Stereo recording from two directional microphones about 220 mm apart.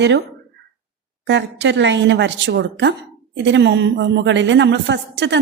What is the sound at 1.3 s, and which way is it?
A woman's voice, 50° right (ahead or behind).